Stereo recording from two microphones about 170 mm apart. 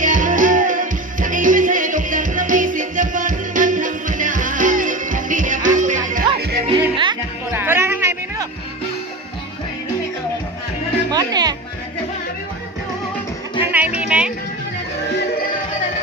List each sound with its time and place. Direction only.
0.0 s music: 50° right (ahead or behind)
6.4 s music: 75° right (ahead or behind)
6.7 s music: 30° right (ahead or behind)
7.5 s a sound: 15° right (ahead or behind)
11.1 s music: 25° right (ahead or behind)
13.6 s music: 10° right (ahead or behind)